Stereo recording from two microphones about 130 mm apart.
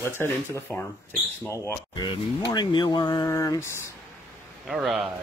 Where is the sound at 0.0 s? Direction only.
20° left (ahead or behind).